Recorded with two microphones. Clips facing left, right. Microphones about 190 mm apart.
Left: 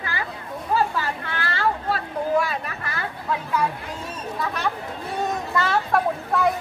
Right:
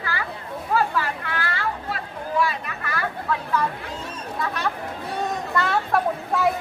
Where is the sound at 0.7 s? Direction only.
30° left (ahead or behind).